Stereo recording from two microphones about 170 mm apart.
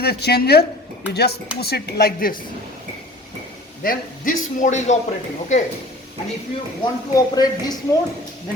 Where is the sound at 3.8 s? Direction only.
55° left (ahead or behind).